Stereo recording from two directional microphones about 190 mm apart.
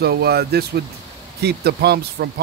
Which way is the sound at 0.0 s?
55° right (ahead or behind).